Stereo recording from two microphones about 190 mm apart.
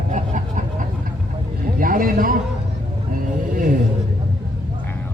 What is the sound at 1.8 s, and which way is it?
Speech, 45° right (ahead or behind).